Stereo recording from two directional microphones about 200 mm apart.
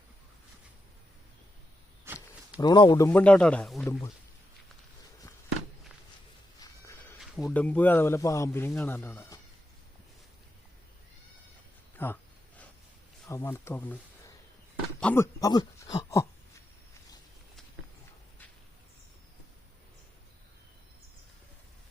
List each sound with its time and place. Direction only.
2.1 s a sound: 10° right (ahead or behind)
2.6 s speech: 20° left (ahead or behind)
3.1 s speech: 5° left (ahead or behind)
6.6 s a sound: 15° left (ahead or behind)
7.4 s speech: 5° left (ahead or behind)
12.0 s speech: 10° left (ahead or behind)
13.2 s speech: 15° left (ahead or behind)